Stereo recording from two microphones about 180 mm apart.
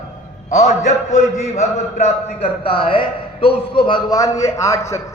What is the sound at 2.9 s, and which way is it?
A man's voice, 30° left (ahead or behind).